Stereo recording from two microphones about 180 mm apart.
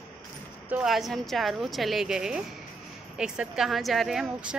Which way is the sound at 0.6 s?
5° right (ahead or behind).